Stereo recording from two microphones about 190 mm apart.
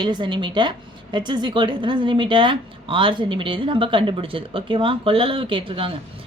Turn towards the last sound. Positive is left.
turn(degrees=-30)  # may be behind; listen again after turning